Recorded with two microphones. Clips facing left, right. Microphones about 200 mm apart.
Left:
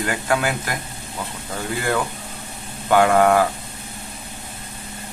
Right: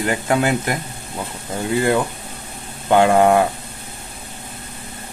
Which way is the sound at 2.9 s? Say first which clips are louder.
Right 2 dB; 25° right (ahead or behind).